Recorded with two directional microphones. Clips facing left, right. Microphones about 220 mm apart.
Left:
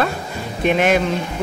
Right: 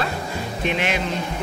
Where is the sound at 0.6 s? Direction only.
50° left (ahead or behind).